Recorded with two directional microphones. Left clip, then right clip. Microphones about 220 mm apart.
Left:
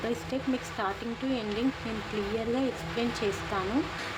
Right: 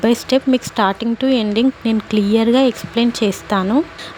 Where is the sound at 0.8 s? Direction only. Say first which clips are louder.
Right 16 dB; 45° right (ahead or behind).